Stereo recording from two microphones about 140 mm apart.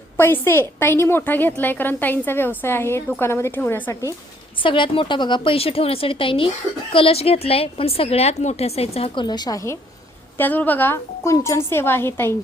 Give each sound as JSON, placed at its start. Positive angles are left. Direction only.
{"t": 0.2, "sound": "a woman's voice", "side_deg": 15}
{"t": 4.6, "sound": "a woman's voice", "side_deg": 40}
{"t": 9.2, "sound": "a woman's voice", "side_deg": 30}
{"t": 10.3, "sound": "a woman's voice", "side_deg": 15}